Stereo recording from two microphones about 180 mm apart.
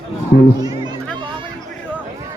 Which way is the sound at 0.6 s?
20° right (ahead or behind).